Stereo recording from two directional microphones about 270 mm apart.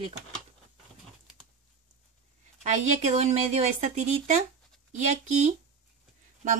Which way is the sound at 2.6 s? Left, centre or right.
Right.